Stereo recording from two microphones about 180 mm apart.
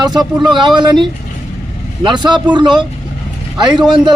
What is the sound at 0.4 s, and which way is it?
Speech, 25° right (ahead or behind).